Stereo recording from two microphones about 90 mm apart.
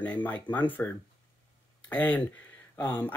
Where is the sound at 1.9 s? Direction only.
20° left (ahead or behind).